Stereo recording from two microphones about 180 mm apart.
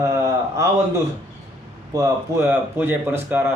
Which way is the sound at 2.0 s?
15° right (ahead or behind).